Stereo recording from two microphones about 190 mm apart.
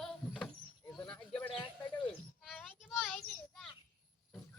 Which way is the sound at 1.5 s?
25° left (ahead or behind).